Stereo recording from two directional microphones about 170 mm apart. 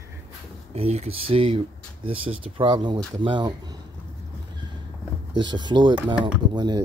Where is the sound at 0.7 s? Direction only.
35° right (ahead or behind).